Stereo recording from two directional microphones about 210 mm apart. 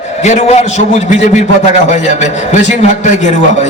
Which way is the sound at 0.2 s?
30° left (ahead or behind).